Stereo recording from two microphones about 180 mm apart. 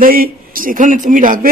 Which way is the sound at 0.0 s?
50° right (ahead or behind).